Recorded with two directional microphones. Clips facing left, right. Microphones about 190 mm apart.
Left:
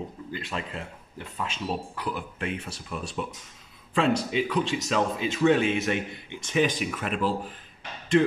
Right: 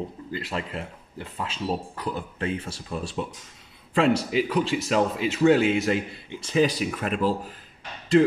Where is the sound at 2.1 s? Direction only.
30° right (ahead or behind).